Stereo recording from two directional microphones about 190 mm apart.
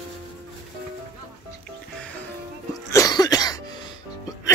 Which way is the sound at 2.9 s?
20° left (ahead or behind).